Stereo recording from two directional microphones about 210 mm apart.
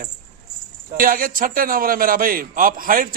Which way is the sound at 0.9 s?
40° right (ahead or behind).